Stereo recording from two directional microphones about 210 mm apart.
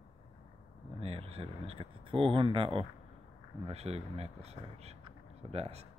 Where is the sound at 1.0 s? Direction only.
30° right (ahead or behind).